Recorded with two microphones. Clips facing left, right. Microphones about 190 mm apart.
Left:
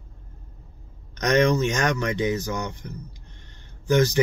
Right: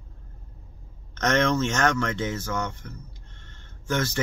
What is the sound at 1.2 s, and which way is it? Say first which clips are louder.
Speech: left 3 dB; 15° left (ahead or behind).